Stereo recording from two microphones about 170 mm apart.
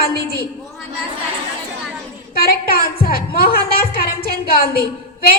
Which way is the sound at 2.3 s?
60° left (ahead or behind).